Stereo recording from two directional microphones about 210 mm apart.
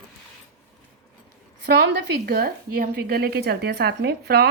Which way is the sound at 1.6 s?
55° right (ahead or behind).